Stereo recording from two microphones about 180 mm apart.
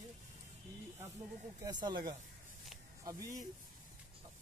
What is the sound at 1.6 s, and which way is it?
Speech, 25° right (ahead or behind).